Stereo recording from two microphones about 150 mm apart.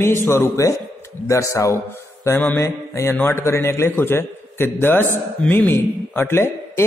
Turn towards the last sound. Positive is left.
turn(degrees=15)  # may be behind; listen again after turning